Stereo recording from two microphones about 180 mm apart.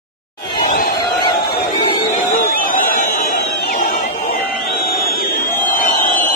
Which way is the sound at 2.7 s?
50° left (ahead or behind).